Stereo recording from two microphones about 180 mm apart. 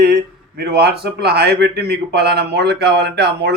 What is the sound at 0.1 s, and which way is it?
Speech, 60° right (ahead or behind).